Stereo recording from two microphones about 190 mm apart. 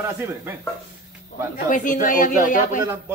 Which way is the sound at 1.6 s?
45° left (ahead or behind).